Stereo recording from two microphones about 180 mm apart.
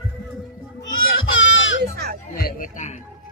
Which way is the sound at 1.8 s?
60° right (ahead or behind).